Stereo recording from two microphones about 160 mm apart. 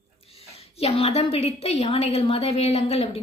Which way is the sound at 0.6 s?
40° left (ahead or behind).